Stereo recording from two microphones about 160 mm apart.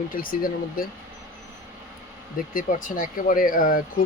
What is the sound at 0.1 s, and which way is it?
Speech, 60° left (ahead or behind).